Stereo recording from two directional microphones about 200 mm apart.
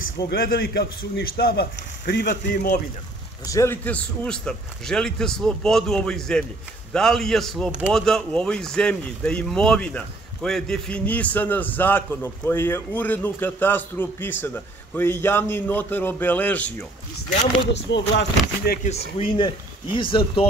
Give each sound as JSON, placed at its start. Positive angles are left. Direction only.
{"t": 0.3, "sound": "a man's voice", "side_deg": 50}
{"t": 3.4, "sound": "a man's voice", "side_deg": 15}
{"t": 17.9, "sound": "speech", "side_deg": 65}
{"t": 18.9, "sound": "speech", "side_deg": 30}